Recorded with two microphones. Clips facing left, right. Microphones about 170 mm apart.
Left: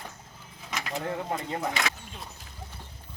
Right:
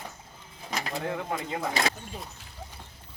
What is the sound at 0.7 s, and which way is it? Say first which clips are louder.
Bird: right 2 dB; 35° right (ahead or behind).